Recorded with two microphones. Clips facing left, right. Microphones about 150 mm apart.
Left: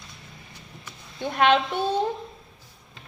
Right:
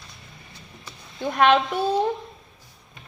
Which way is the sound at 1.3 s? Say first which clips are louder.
Right 2 dB; 40° right (ahead or behind).